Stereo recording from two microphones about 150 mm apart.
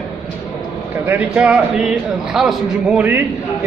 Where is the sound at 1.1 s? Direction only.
5° right (ahead or behind).